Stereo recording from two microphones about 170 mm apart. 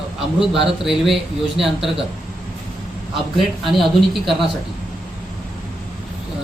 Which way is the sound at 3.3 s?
Centre (ahead or behind).